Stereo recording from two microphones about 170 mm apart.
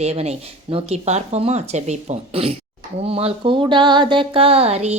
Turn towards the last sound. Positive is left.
turn(degrees=-40)  # may be behind; listen again after turning